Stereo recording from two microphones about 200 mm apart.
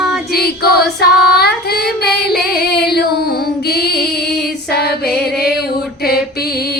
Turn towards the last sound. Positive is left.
turn(degrees=50)  # may be behind; listen again after turning